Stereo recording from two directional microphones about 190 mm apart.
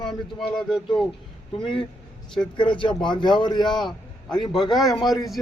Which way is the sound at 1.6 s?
25° left (ahead or behind).